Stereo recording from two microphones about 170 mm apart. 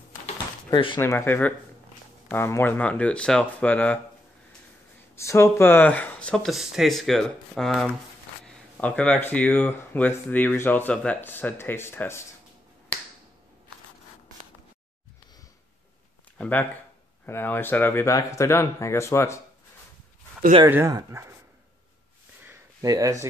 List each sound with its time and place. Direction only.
0.7 s speech: 25° left (ahead or behind)
1.0 s speech: 15° left (ahead or behind)
5.1 s speech: 15° left (ahead or behind)
16.3 s speech: 10° left (ahead or behind)
20.6 s speech: 15° right (ahead or behind)
22.4 s a sound: 15° right (ahead or behind)